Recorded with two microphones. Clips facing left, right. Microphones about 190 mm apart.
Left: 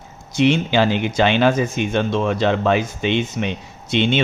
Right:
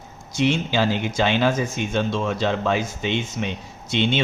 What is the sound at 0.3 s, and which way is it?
Speech, 65° left (ahead or behind).